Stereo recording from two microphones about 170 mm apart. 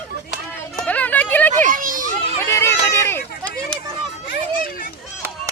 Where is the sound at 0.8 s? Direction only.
10° left (ahead or behind).